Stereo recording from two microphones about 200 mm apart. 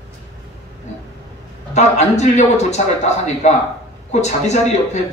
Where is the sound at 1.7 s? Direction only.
35° left (ahead or behind).